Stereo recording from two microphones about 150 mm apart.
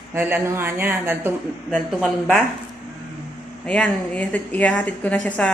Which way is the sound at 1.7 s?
Centre (ahead or behind).